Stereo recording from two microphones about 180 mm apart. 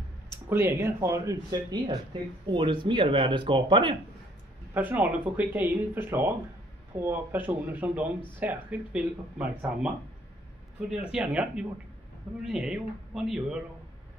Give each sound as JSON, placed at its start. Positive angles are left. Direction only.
{"t": 0.5, "sound": "speech", "side_deg": -15}
{"t": 4.7, "sound": "speech", "side_deg": -10}